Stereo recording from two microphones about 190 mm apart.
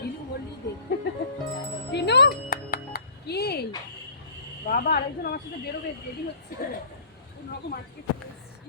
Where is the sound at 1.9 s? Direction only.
60° left (ahead or behind).